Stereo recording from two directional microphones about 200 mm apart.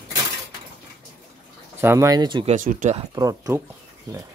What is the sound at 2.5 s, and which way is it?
Speech, 40° right (ahead or behind).